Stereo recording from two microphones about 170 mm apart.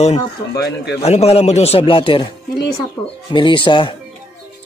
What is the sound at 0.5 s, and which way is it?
Speech, 75° left (ahead or behind).